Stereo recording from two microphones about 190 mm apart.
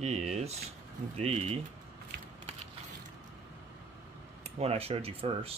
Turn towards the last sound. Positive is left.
turn(degrees=-30)  # may be behind; listen again after turning